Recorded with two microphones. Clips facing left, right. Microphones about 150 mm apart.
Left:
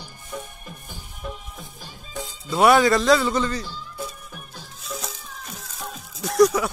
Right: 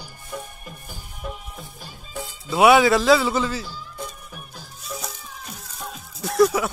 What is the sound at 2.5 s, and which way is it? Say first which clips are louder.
A man's voice: right 1 dB; 5° right (ahead or behind).